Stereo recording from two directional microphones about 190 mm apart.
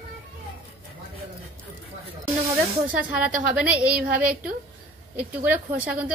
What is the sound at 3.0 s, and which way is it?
A woman's voice, 5° right (ahead or behind).